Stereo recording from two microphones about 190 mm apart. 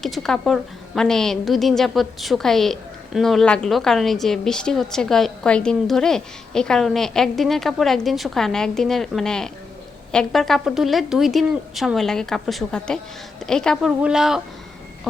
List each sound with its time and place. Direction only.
0.0 s a woman's voice: centre (ahead or behind)